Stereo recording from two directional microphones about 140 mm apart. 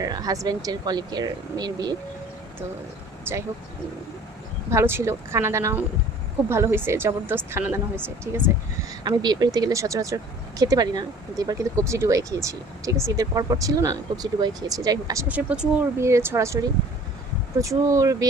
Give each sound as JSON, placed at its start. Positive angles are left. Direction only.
{"t": 0.0, "sound": "speech", "side_deg": -25}
{"t": 3.3, "sound": "a woman's voice", "side_deg": -15}
{"t": 4.7, "sound": "a woman's voice", "side_deg": -20}
{"t": 8.9, "sound": "speech", "side_deg": -30}
{"t": 15.3, "sound": "a woman's voice", "side_deg": -10}
{"t": 17.6, "sound": "speech", "side_deg": -25}